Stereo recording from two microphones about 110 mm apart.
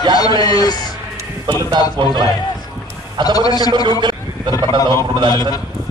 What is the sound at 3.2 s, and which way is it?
Speech, 35° left (ahead or behind).